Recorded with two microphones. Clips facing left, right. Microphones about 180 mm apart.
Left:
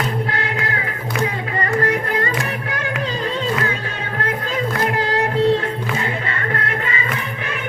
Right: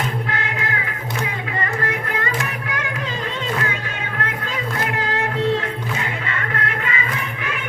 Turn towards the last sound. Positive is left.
turn(degrees=35)  # may be behind; listen again after turning